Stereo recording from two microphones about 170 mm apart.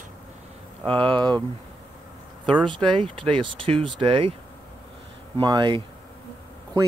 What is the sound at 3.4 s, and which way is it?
Speech, 30° right (ahead or behind).